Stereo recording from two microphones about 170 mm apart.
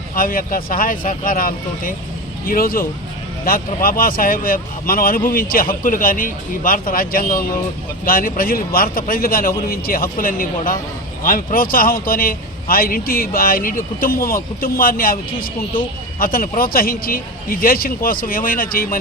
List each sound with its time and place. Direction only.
0.2 s a man's voice: 55° left (ahead or behind)